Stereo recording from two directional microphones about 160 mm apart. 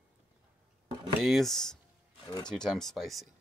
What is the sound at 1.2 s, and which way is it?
Speech, centre (ahead or behind).